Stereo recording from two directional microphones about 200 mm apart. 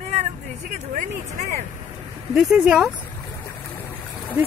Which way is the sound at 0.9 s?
40° right (ahead or behind).